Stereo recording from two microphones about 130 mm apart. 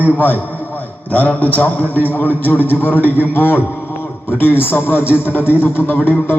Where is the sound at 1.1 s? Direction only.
15° left (ahead or behind).